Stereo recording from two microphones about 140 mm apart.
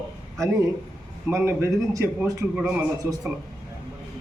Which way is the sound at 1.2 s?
20° right (ahead or behind).